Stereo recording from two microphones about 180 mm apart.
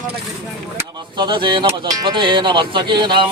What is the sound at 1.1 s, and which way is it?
Speech, 25° right (ahead or behind).